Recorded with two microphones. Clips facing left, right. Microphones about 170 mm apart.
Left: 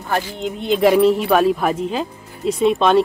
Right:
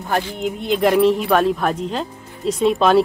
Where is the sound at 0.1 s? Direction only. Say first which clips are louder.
Right 1 dB; centre (ahead or behind).